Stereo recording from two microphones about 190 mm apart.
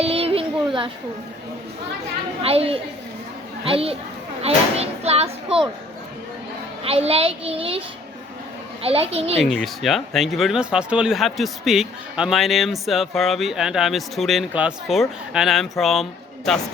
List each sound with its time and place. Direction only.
0.0 s a sound: 30° right (ahead or behind)
2.4 s speech: 30° right (ahead or behind)
6.8 s speech: 30° right (ahead or behind)
8.8 s speech: 30° right (ahead or behind)
9.4 s speech: centre (ahead or behind)